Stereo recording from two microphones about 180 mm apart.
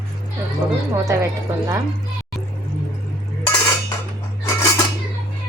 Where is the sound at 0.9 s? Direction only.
15° right (ahead or behind).